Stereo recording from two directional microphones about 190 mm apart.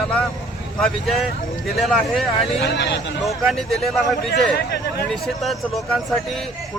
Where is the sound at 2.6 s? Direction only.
65° left (ahead or behind).